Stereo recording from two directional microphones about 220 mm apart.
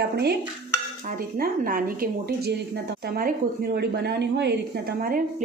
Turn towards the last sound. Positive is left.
turn(degrees=-40)  # may be behind; listen again after turning